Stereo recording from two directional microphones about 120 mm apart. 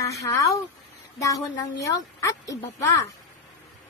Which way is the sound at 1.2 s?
30° left (ahead or behind).